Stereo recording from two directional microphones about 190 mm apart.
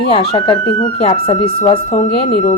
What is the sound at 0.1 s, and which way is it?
A woman's voice, 30° left (ahead or behind).